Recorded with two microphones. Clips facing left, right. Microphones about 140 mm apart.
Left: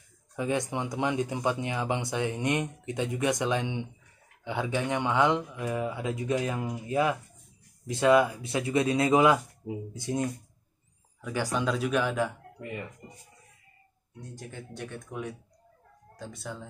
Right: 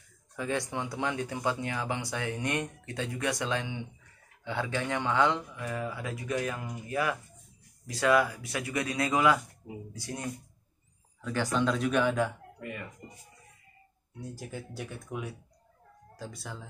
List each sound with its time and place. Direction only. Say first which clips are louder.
0.4 s speech: left 3 dB; 20° left (ahead or behind)
11.1 s speech: right 1 dB; 10° left (ahead or behind)
12.5 s speech: left 2 dB; 25° left (ahead or behind)
14.2 s speech: right 2 dB; 5° right (ahead or behind)